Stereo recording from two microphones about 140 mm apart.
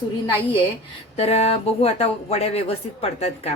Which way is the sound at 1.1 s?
50° left (ahead or behind).